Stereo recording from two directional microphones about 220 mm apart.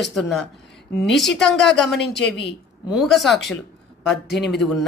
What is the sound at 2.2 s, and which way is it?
Speech, 50° left (ahead or behind).